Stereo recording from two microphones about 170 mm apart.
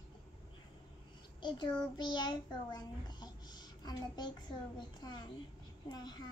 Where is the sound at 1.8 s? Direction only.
25° left (ahead or behind).